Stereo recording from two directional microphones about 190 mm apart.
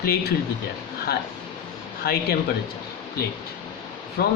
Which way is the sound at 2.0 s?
55° left (ahead or behind).